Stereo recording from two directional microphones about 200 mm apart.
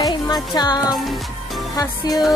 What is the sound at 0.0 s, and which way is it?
Music, 20° left (ahead or behind).